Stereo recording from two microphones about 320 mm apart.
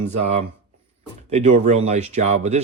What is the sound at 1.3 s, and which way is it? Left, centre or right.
Speech, centre.